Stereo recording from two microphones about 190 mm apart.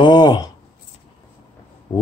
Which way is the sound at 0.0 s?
20° left (ahead or behind).